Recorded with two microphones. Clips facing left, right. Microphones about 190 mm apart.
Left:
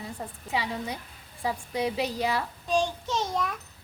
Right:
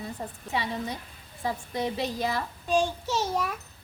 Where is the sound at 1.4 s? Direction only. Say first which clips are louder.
Left 1 dB; 10° left (ahead or behind).